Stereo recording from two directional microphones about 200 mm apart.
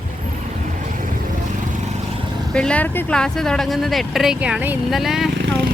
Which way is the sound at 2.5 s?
5° left (ahead or behind).